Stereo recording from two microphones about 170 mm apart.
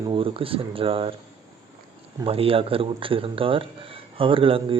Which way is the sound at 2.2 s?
35° right (ahead or behind).